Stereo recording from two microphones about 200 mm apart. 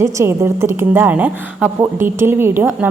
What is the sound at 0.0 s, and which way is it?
A woman's voice, 15° right (ahead or behind).